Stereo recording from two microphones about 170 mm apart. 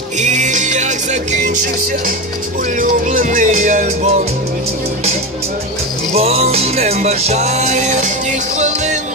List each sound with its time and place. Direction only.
0.2 s music: 45° right (ahead or behind)
6.1 s music: 35° right (ahead or behind)